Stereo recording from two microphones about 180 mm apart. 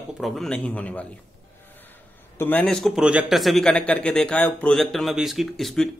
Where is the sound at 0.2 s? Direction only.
Centre (ahead or behind).